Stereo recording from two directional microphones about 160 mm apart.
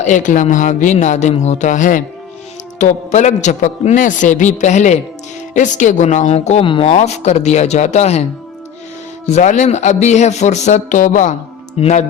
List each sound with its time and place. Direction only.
0.0 s a man's voice: 50° left (ahead or behind)
9.2 s a man's voice: 50° left (ahead or behind)